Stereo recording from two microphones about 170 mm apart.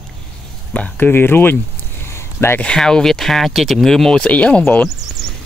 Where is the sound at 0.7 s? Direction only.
10° left (ahead or behind).